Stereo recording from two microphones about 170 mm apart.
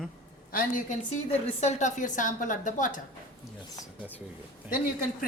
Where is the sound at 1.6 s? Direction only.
45° left (ahead or behind).